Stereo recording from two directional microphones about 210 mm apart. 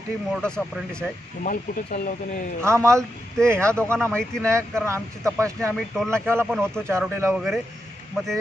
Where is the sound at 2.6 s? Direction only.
15° right (ahead or behind).